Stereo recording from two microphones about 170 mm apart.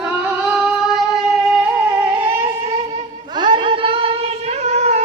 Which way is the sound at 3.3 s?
25° right (ahead or behind).